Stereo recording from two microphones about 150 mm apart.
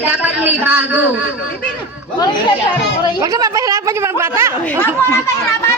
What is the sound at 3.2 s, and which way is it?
A woman's voice, 25° right (ahead or behind).